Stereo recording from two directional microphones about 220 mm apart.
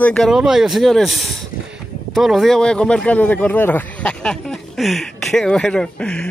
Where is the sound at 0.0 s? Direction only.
5° left (ahead or behind).